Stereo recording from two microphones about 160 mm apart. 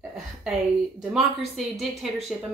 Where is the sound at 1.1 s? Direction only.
Centre (ahead or behind).